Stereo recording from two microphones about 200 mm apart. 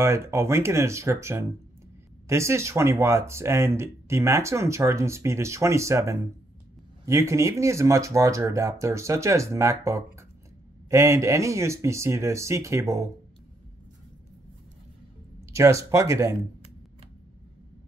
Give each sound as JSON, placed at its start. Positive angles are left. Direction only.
{"t": 0.0, "sound": "speech", "side_deg": -15}
{"t": 15.4, "sound": "speech", "side_deg": -15}